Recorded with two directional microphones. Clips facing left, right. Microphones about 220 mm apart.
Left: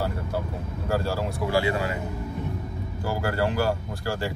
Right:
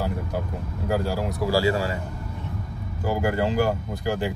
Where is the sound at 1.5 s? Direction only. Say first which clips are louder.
Right 2 dB; 35° right (ahead or behind).